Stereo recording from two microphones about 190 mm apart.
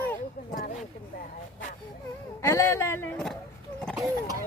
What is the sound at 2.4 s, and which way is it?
Speech, 15° left (ahead or behind).